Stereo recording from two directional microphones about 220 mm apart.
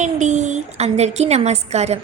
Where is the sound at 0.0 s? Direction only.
35° right (ahead or behind).